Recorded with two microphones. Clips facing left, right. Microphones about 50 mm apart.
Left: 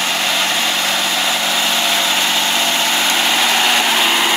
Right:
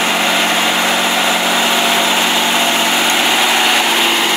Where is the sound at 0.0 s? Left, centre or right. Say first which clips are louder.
Right 4 dB; centre.